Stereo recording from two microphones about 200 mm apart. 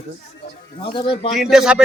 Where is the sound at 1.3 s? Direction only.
Centre (ahead or behind).